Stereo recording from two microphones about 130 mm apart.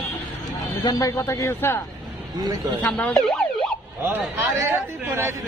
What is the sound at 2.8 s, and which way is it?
Speech, 10° left (ahead or behind).